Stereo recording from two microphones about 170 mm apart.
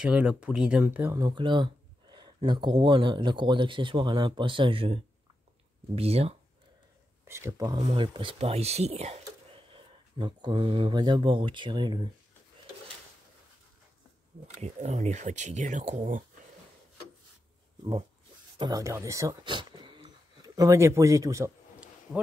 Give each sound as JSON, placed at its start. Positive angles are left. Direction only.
{"t": 0.0, "sound": "speech", "side_deg": -5}
{"t": 1.1, "sound": "speech", "side_deg": -25}
{"t": 7.2, "sound": "speech", "side_deg": -15}
{"t": 9.7, "sound": "speech", "side_deg": -30}
{"t": 14.6, "sound": "speech", "side_deg": -45}
{"t": 18.6, "sound": "speech", "side_deg": -20}